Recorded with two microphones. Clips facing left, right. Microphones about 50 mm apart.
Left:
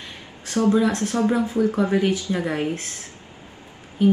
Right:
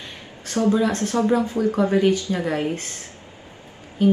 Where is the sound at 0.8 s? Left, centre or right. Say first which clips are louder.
Right 1 dB; centre.